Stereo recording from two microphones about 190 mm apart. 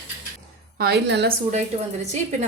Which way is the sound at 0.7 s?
55° right (ahead or behind).